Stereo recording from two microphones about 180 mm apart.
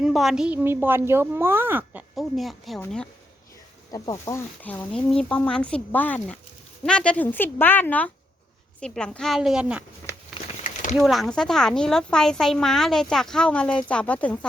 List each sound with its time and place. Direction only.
0.0 s a woman's voice: centre (ahead or behind)
3.9 s speech: 20° left (ahead or behind); by 9.8 s 5° right (ahead or behind)
10.9 s speech: centre (ahead or behind)